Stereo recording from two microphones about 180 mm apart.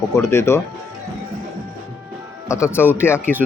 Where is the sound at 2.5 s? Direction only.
15° left (ahead or behind).